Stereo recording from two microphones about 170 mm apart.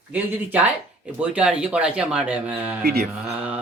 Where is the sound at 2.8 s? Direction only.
70° right (ahead or behind).